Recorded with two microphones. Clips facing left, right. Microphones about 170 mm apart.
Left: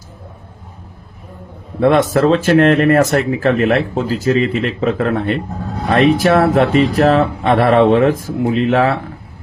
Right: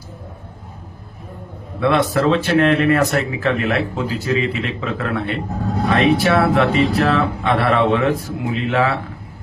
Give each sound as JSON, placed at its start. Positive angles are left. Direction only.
{"t": 1.8, "sound": "speech", "side_deg": 45}